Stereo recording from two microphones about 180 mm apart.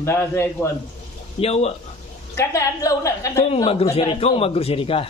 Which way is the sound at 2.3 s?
15° left (ahead or behind).